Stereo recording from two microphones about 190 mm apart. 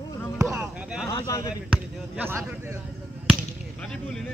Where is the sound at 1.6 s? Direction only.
5° right (ahead or behind).